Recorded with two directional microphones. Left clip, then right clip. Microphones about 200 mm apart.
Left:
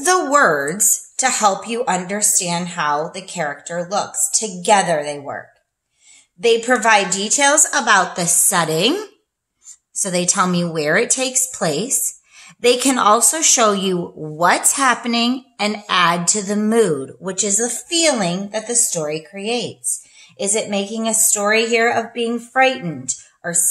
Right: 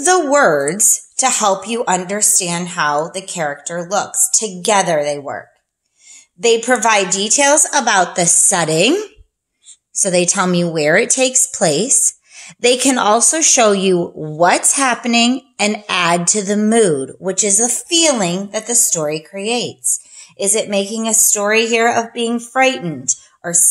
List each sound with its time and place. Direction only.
0.0 s speech: 20° right (ahead or behind); by 5.4 s 40° right (ahead or behind)
6.4 s a woman's voice: 35° right (ahead or behind)